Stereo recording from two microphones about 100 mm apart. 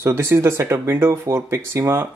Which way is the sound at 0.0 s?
25° right (ahead or behind).